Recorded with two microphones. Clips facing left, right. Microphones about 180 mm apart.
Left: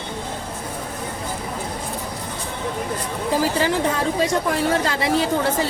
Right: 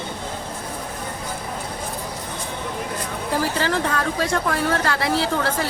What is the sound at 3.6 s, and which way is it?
Speech, 15° left (ahead or behind).